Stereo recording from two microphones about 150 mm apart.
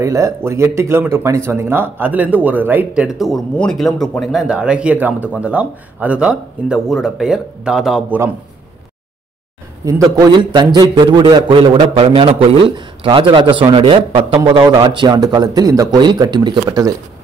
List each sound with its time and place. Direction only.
0.0 s speech: 20° right (ahead or behind)
3.0 s speech: centre (ahead or behind)
10.1 s a man's voice: 30° right (ahead or behind)